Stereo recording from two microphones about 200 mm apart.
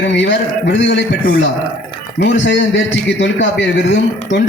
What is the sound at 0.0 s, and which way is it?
Speech, 60° left (ahead or behind).